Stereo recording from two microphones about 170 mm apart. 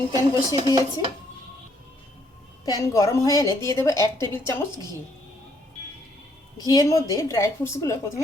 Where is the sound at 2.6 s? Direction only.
20° left (ahead or behind).